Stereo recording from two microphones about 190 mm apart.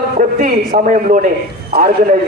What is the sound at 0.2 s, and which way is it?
A man's voice, 45° right (ahead or behind).